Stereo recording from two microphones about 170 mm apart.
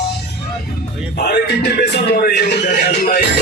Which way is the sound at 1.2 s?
70° left (ahead or behind).